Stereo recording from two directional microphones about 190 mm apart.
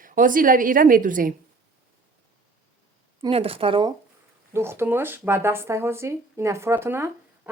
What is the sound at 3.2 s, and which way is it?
Speech, 30° right (ahead or behind).